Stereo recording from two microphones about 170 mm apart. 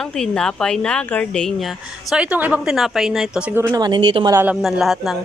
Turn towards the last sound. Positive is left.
turn(degrees=0)  # may be behind; listen again after turning